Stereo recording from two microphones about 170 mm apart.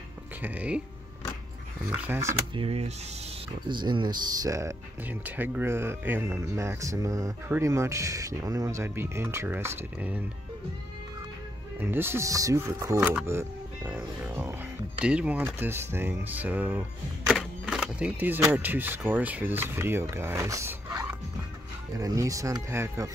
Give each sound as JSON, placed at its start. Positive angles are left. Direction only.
{"t": 0.4, "sound": "speech", "side_deg": -10}
{"t": 1.9, "sound": "speech", "side_deg": -15}
{"t": 2.5, "sound": "speech", "side_deg": -35}
{"t": 11.8, "sound": "speech", "side_deg": -15}
{"t": 21.9, "sound": "speech", "side_deg": -20}